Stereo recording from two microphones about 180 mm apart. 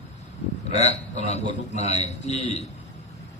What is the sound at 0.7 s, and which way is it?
A man's voice, 35° left (ahead or behind).